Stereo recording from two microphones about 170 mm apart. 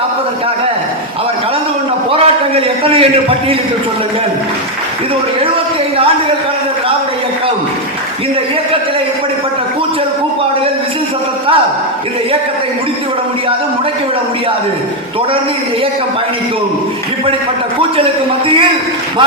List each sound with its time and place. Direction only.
2.1 s a man's voice: 35° right (ahead or behind)
17.9 s a man's voice: 30° right (ahead or behind)